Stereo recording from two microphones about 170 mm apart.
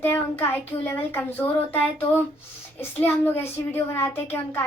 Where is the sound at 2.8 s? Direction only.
10° left (ahead or behind).